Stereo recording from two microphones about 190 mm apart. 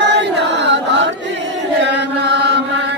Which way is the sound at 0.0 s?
65° right (ahead or behind).